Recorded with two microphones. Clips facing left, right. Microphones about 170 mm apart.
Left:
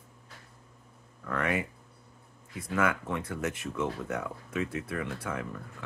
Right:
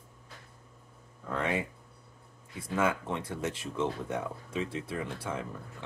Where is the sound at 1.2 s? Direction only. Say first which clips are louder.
Left 1 dB; 25° right (ahead or behind).